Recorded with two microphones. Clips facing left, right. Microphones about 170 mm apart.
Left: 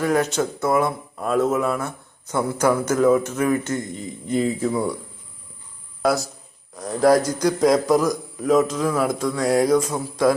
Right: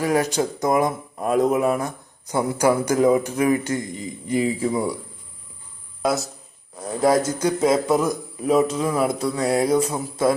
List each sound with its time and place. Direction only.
0.0 s speech: 10° right (ahead or behind)
6.0 s a man's voice: centre (ahead or behind)
9.0 s a sound: 35° right (ahead or behind)
9.9 s a man's voice: centre (ahead or behind)